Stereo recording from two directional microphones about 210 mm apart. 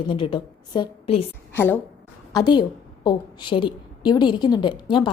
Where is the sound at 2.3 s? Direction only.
20° left (ahead or behind).